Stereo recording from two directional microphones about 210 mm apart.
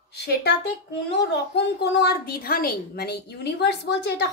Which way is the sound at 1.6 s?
50° left (ahead or behind).